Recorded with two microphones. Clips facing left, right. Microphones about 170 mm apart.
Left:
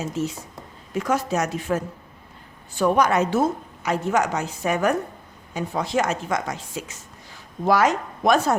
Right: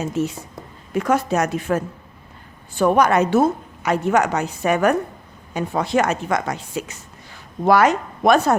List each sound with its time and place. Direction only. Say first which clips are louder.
0.2 s a woman's voice: right 4 dB; 60° right (ahead or behind)